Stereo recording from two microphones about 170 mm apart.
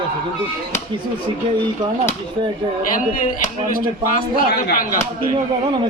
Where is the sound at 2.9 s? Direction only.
55° left (ahead or behind).